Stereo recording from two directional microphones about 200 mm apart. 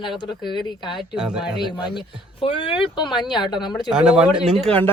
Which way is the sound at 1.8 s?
25° left (ahead or behind).